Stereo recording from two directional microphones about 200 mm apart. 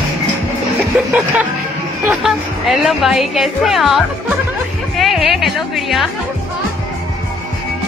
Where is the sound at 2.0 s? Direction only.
Centre (ahead or behind).